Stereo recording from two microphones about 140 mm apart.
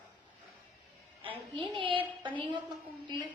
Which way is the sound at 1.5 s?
35° right (ahead or behind).